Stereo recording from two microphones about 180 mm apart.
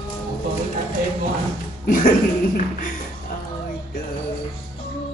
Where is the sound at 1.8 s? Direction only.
50° left (ahead or behind).